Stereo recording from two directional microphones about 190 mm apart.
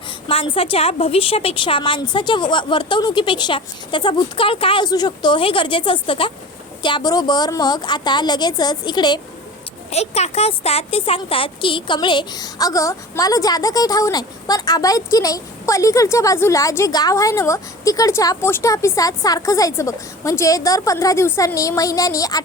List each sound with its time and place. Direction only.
0.3 s a woman's voice: 30° left (ahead or behind)
9.9 s speech: 35° left (ahead or behind); by 22.4 s 20° left (ahead or behind)